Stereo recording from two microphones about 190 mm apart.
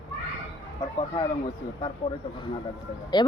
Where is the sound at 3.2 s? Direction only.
20° left (ahead or behind).